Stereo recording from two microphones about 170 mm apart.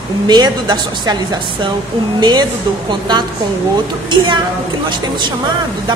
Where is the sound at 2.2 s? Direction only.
25° right (ahead or behind).